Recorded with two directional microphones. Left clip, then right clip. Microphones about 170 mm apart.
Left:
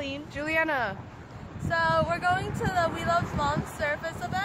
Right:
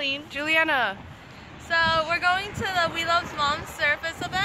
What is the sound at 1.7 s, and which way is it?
Speech, 35° left (ahead or behind).